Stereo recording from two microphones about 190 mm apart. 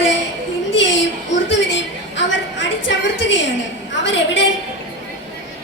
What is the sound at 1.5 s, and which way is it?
A woman's voice, 70° left (ahead or behind).